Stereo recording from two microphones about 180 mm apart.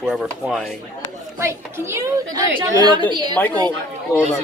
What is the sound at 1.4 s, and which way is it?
A woman's voice, 15° right (ahead or behind).